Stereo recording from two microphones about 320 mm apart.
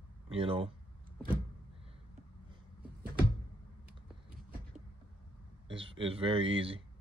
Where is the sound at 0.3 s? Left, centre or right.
Centre.